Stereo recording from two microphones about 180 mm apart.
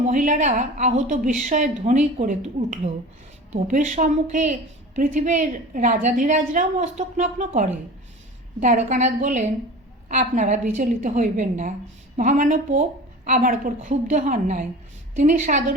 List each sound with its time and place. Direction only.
0.0 s a woman's voice: 45° right (ahead or behind)